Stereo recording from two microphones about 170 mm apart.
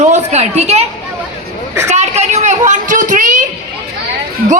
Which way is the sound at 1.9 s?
40° right (ahead or behind).